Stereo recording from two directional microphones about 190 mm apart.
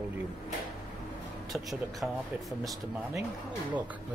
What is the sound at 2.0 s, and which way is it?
Speech, 5° right (ahead or behind).